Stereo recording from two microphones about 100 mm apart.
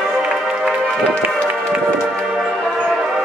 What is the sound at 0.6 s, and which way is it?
Music, 10° left (ahead or behind).